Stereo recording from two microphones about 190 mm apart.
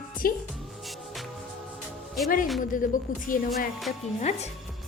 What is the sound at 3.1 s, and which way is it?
Speech, 45° left (ahead or behind).